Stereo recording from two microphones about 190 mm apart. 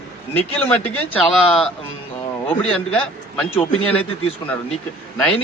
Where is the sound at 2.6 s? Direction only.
5° left (ahead or behind).